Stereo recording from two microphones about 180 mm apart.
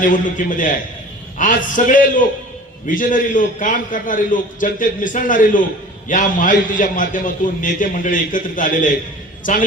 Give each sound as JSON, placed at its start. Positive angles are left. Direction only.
{"t": 0.0, "sound": "a man's voice", "side_deg": 50}